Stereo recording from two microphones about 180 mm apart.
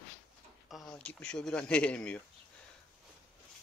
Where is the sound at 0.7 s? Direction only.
Centre (ahead or behind).